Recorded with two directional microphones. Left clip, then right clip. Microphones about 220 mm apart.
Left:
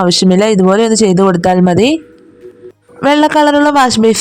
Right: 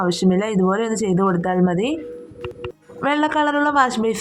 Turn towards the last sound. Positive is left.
turn(degrees=45)  # may be behind; listen again after turning